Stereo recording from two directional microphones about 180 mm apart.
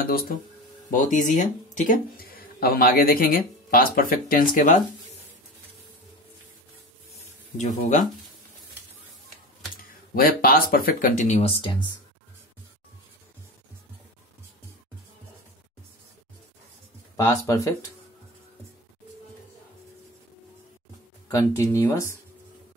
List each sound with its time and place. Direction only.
0.0 s speech: 55° left (ahead or behind)
7.2 s a sound: 40° left (ahead or behind)
10.1 s speech: 55° left (ahead or behind); by 11.9 s 30° left (ahead or behind)
17.5 s speech: 15° left (ahead or behind)
21.3 s speech: 15° left (ahead or behind)